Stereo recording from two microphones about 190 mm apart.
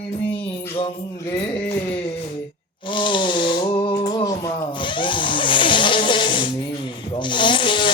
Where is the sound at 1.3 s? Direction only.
25° left (ahead or behind).